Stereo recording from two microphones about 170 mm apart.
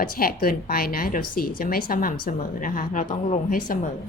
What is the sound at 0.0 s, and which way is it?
A woman's voice, 60° left (ahead or behind).